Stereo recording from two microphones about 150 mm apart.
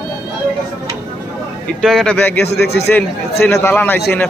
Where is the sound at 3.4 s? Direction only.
15° left (ahead or behind).